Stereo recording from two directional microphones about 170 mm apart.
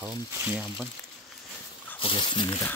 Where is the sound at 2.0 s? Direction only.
30° left (ahead or behind).